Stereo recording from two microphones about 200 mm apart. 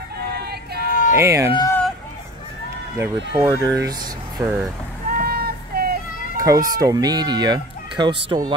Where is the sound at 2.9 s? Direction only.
10° right (ahead or behind).